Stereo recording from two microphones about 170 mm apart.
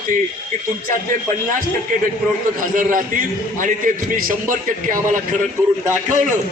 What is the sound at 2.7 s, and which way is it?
Speech, 50° right (ahead or behind).